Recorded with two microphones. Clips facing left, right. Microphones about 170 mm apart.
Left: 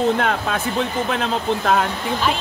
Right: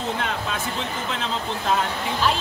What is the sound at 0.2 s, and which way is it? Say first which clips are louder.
Speech: left 6 dB; 55° left (ahead or behind).